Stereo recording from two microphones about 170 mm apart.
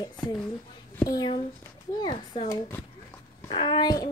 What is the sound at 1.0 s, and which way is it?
Speech, 25° left (ahead or behind).